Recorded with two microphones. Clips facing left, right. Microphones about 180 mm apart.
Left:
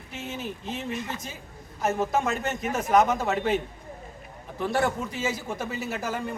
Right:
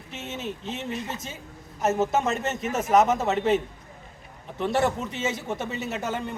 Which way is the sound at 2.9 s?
5° right (ahead or behind).